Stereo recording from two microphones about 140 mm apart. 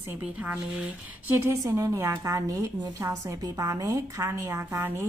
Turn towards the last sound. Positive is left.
turn(degrees=-20)  # may be behind; listen again after turning